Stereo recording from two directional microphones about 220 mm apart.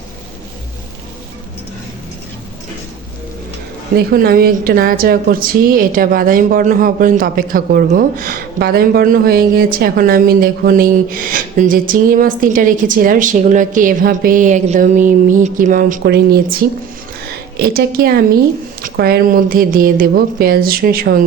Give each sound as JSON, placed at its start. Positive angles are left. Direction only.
{"t": 3.9, "sound": "a woman's voice", "side_deg": -45}